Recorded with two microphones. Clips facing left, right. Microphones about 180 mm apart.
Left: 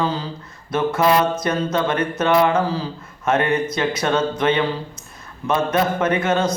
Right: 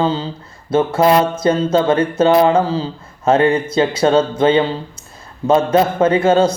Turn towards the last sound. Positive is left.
turn(degrees=-30)  # may be behind; listen again after turning